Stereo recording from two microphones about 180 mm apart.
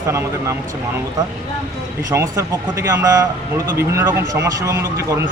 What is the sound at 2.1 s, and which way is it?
Speech, 15° right (ahead or behind).